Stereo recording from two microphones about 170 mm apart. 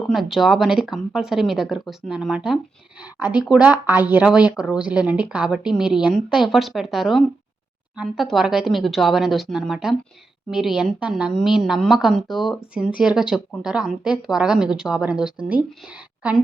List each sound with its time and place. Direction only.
0.0 s speech: centre (ahead or behind)